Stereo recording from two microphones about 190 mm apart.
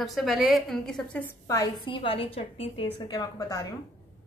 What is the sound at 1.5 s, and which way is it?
A woman's voice, 20° left (ahead or behind).